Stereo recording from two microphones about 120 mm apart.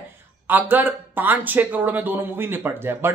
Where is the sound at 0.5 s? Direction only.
15° right (ahead or behind).